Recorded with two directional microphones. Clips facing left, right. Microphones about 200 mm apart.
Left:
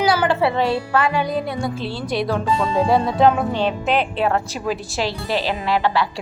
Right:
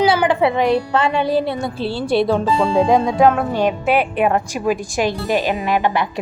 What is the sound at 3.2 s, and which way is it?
A woman's voice, 5° right (ahead or behind).